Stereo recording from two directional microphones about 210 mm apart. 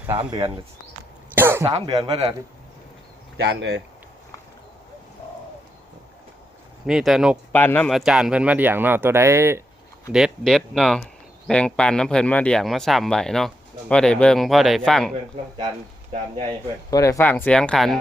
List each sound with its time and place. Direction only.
0.2 s speech: 20° right (ahead or behind)
1.4 s cough: 10° right (ahead or behind)
1.7 s speech: 20° right (ahead or behind)
3.3 s speech: 55° right (ahead or behind)
6.8 s speech: centre (ahead or behind)
7.5 s speech: 10° left (ahead or behind)
16.9 s speech: 15° left (ahead or behind)